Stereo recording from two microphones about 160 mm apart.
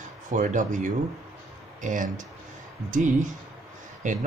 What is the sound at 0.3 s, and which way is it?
Speech, 50° right (ahead or behind).